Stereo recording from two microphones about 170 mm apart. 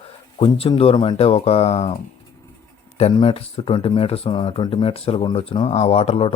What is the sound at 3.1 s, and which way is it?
Speech, 35° left (ahead or behind).